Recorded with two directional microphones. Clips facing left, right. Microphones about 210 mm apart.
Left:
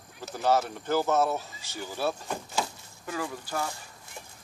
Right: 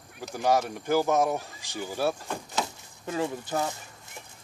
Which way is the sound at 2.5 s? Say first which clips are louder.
Even; 25° right (ahead or behind).